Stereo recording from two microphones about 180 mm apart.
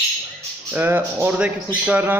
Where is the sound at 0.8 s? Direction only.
10° right (ahead or behind).